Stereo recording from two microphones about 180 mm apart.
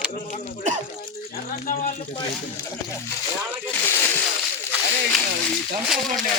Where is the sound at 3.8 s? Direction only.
15° left (ahead or behind).